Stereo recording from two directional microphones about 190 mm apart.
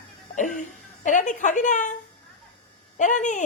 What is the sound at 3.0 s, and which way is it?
Speech, 40° left (ahead or behind).